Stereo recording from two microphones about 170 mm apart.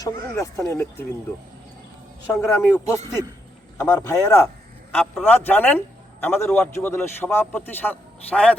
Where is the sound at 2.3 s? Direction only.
15° left (ahead or behind).